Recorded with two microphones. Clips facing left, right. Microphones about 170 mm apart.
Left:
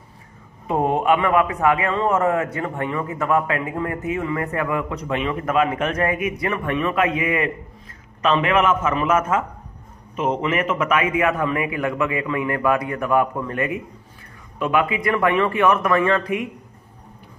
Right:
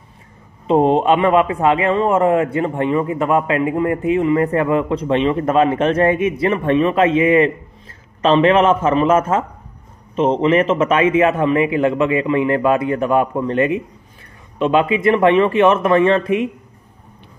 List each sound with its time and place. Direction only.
0.7 s a man's voice: 25° right (ahead or behind)